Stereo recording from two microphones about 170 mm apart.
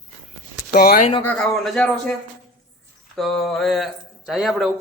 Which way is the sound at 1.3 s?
5° left (ahead or behind).